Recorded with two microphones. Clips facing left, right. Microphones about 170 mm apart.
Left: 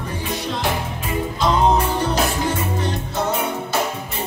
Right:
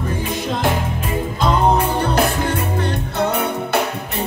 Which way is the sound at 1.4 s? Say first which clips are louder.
Right 1 dB; 55° right (ahead or behind).